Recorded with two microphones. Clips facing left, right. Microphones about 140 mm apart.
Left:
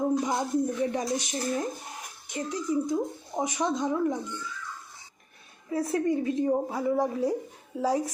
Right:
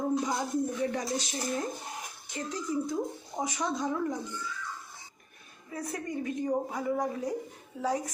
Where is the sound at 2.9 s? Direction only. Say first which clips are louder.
Left 4 dB; 20° left (ahead or behind).